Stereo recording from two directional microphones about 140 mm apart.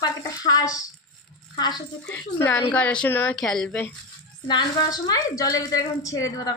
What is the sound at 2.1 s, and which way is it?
A woman's voice, 15° left (ahead or behind).